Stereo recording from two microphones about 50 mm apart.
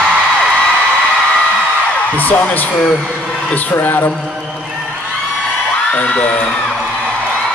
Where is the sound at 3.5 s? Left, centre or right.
Left.